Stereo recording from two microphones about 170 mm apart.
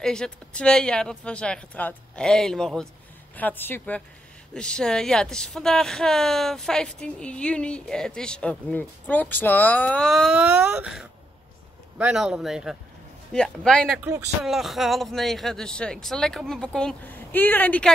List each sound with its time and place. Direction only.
0.0 s a woman's voice: 5° left (ahead or behind)
14.0 s speech: 15° right (ahead or behind)
14.4 s speech: centre (ahead or behind)